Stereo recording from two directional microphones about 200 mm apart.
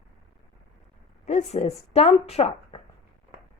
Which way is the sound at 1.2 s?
35° left (ahead or behind).